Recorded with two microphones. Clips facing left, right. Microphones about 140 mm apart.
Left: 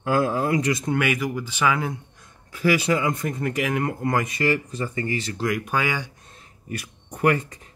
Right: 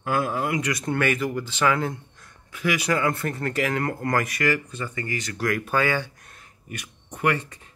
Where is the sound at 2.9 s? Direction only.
15° left (ahead or behind).